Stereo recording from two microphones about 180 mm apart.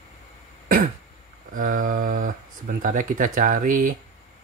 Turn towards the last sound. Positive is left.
turn(degrees=-50)  # may be behind; listen again after turning